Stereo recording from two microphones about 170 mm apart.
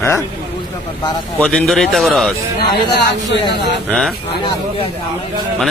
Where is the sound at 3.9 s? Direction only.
Centre (ahead or behind).